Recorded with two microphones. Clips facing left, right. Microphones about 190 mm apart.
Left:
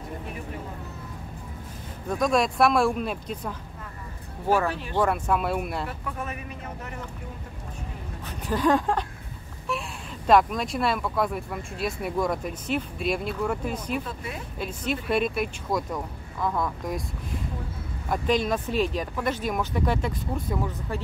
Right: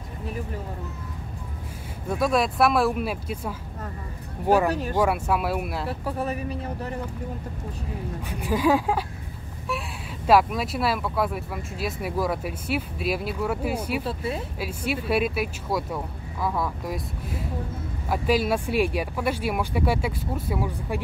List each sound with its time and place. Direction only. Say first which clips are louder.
2.0 s speech: even; 5° right (ahead or behind)
4.9 s speech: left 2 dB; 10° right (ahead or behind)
5.9 s speech: right 6 dB; 35° right (ahead or behind)
8.3 s speech: right 1 dB; 10° right (ahead or behind)
14.0 s speech: right 7 dB; 30° right (ahead or behind)
14.6 s speech: left 4 dB; 10° right (ahead or behind)